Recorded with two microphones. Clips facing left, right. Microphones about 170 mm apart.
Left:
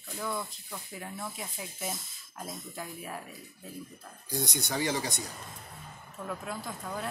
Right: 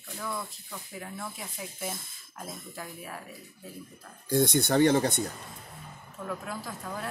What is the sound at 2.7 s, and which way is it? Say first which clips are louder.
Speech: left 1 dB; 5° left (ahead or behind).